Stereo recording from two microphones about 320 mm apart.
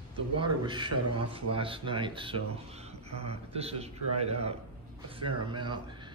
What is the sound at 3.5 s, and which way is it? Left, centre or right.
Speech, centre.